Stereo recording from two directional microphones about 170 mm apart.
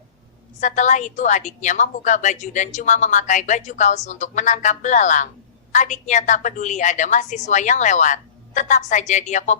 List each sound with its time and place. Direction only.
0.6 s a woman's voice: 45° left (ahead or behind)